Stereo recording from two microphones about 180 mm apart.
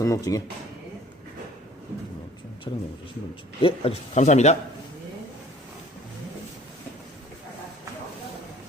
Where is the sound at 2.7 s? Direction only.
20° left (ahead or behind).